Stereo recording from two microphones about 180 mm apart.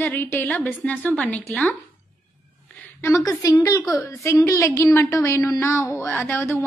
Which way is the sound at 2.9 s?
15° left (ahead or behind).